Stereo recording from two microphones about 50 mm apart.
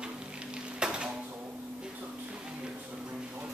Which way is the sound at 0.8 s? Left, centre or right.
Centre.